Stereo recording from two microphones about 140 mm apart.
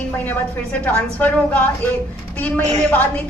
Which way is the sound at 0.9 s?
10° left (ahead or behind).